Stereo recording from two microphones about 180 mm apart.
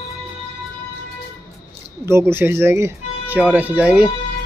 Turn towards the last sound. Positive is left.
turn(degrees=-5)  # may be behind; listen again after turning